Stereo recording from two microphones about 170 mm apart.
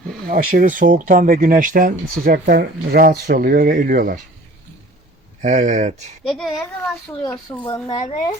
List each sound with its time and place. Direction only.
0.3 s speech: 50° right (ahead or behind)
5.4 s speech: 45° right (ahead or behind)
6.2 s speech: centre (ahead or behind)
7.6 s speech: 30° left (ahead or behind)